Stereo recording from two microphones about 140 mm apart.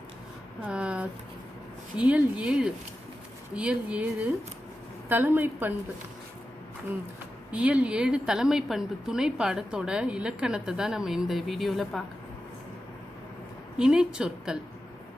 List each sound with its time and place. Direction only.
0.7 s a sound: 10° right (ahead or behind)
2.0 s speech: 10° right (ahead or behind)
7.5 s a woman's voice: 10° right (ahead or behind)
13.7 s a woman's voice: 5° right (ahead or behind)